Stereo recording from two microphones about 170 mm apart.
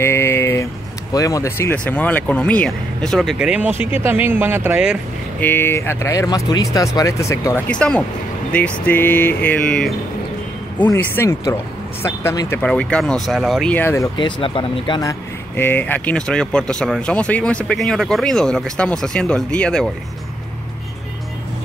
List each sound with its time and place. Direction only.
0.0 s a sound: 15° left (ahead or behind)
1.1 s speech: 20° left (ahead or behind); by 4.9 s 10° right (ahead or behind)
5.4 s speech: 10° left (ahead or behind)
14.1 s speech: 30° left (ahead or behind); by 19.9 s 5° left (ahead or behind)